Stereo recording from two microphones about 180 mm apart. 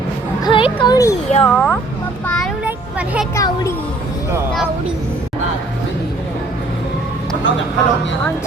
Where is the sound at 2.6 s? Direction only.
5° right (ahead or behind).